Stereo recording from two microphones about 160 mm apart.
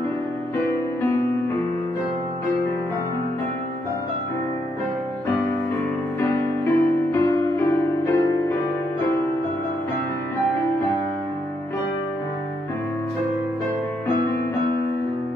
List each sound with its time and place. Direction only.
0.7 s music: 10° left (ahead or behind)
6.1 s music: 20° left (ahead or behind)